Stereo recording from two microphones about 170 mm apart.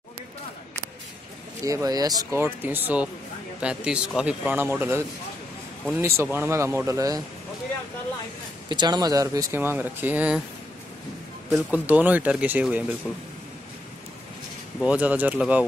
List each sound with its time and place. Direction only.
1.6 s speech: 20° right (ahead or behind)
8.6 s speech: 25° right (ahead or behind); by 10.4 s 10° right (ahead or behind)
11.5 s speech: 10° right (ahead or behind)
14.8 s speech: 10° right (ahead or behind)